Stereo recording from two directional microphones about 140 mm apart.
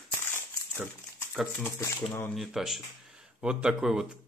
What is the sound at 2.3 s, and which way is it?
Speech, 5° right (ahead or behind).